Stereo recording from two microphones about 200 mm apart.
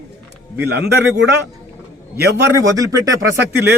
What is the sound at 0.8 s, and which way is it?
Speech, 60° right (ahead or behind).